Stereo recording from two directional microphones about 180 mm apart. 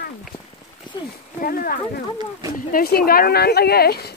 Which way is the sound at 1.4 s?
55° left (ahead or behind).